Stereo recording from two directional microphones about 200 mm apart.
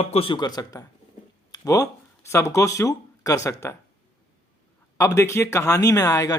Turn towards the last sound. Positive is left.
turn(degrees=15)  # may be behind; listen again after turning